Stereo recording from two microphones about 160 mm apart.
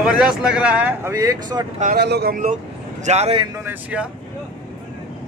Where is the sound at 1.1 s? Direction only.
20° right (ahead or behind).